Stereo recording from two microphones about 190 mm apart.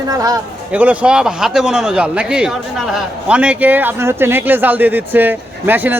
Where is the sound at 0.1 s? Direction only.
20° right (ahead or behind).